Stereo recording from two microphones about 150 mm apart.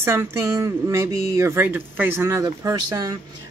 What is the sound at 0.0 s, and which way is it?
Speech, 15° right (ahead or behind).